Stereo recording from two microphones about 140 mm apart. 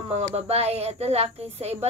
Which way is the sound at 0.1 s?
50° right (ahead or behind).